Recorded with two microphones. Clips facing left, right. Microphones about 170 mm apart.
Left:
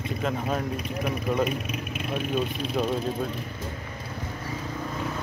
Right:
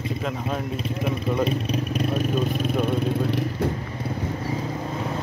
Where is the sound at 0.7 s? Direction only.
30° right (ahead or behind); by 2.9 s 50° right (ahead or behind).